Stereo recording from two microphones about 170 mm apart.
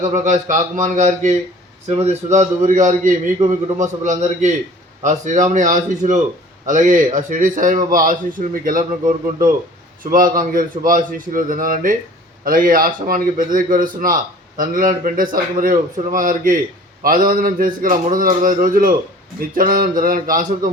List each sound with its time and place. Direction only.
0.0 s a man's voice: 50° right (ahead or behind)